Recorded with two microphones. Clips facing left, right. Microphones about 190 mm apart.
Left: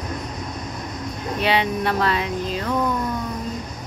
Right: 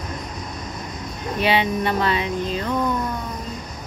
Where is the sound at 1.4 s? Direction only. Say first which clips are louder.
Right 1 dB; centre (ahead or behind).